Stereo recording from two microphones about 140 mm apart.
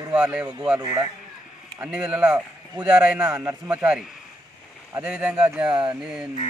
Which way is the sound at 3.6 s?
5° right (ahead or behind).